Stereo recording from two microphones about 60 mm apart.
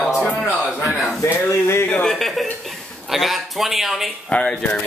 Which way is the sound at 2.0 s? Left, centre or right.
Centre.